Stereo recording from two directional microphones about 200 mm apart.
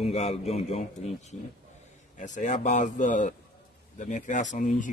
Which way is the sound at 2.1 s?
40° left (ahead or behind).